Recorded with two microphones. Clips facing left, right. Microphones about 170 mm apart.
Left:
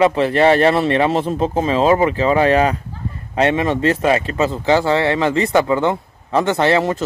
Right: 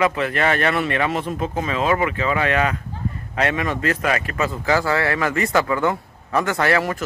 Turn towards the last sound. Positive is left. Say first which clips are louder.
# left 4 dB
turn(degrees=25)  # may be behind; listen again after turning